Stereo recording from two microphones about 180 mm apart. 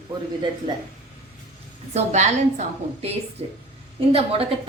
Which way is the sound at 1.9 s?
40° right (ahead or behind).